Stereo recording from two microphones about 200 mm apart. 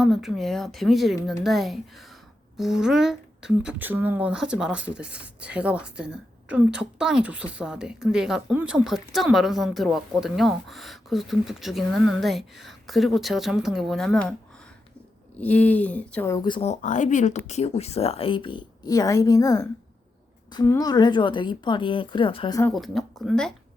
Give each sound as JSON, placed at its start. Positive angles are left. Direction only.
{"t": 0.0, "sound": "speech", "side_deg": 0}
{"t": 15.4, "sound": "speech", "side_deg": 5}
{"t": 22.7, "sound": "speech", "side_deg": 0}